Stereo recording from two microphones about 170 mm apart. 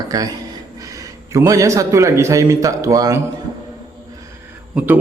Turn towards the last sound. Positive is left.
turn(degrees=-10)  # may be behind; listen again after turning